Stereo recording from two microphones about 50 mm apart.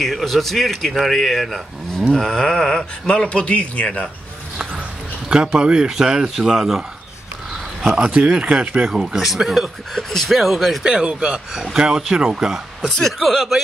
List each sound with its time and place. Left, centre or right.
0.0 s speech: centre
3.3 s speech: left
5.6 s speech: centre
7.8 s speech: right
8.8 s speech: centre
10.8 s speech: centre
12.9 s speech: centre